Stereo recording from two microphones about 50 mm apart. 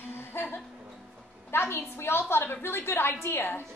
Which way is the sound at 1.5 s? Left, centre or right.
Left.